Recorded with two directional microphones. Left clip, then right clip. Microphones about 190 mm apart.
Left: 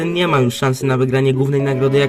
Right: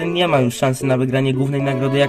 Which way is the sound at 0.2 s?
25° left (ahead or behind).